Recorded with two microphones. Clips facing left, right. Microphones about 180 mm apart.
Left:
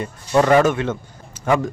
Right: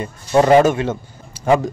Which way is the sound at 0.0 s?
25° right (ahead or behind).